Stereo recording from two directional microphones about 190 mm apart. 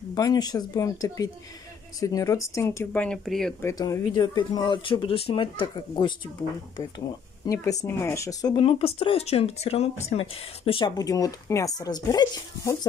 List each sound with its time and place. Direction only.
0.1 s speech: 20° left (ahead or behind); by 3.5 s 5° left (ahead or behind)
3.6 s speech: 15° left (ahead or behind)
7.4 s speech: 20° left (ahead or behind)